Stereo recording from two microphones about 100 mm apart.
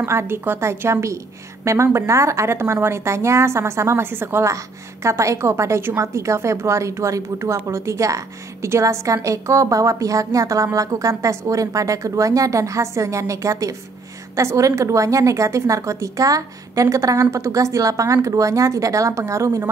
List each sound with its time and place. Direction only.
0.0 s a woman's voice: 25° right (ahead or behind)